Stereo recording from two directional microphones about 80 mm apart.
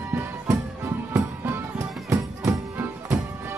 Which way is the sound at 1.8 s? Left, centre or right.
Right.